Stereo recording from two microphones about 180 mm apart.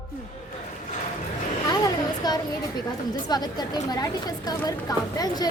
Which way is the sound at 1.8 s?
20° left (ahead or behind).